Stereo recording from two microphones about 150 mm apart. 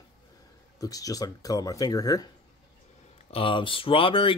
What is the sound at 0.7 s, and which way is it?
Speech, 25° left (ahead or behind).